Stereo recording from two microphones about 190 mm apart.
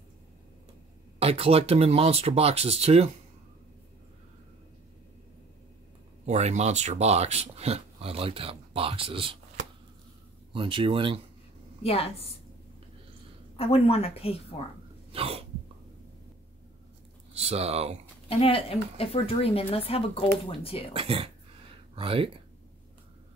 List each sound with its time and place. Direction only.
1.2 s speech: 30° right (ahead or behind)
6.2 s speech: 35° right (ahead or behind)
10.5 s speech: 25° right (ahead or behind)
11.8 s speech: 30° left (ahead or behind)
13.6 s speech: 30° left (ahead or behind)
15.1 s cough: 30° right (ahead or behind)
17.3 s speech: 35° right (ahead or behind)
18.3 s speech: 30° left (ahead or behind)
20.9 s speech: 30° right (ahead or behind)